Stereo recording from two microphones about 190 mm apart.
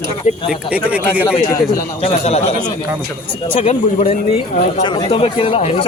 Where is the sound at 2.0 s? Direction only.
35° left (ahead or behind).